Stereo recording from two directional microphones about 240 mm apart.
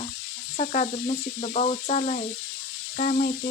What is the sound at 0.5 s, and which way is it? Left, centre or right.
Speech, left.